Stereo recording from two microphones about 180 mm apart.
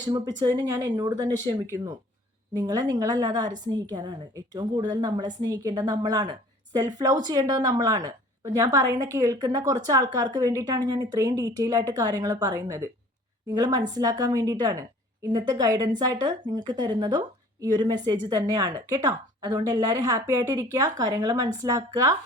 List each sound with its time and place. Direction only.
0.0 s a woman's voice: 20° right (ahead or behind)